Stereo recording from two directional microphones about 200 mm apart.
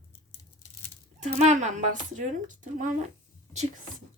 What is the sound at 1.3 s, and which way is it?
A woman's voice, 35° right (ahead or behind).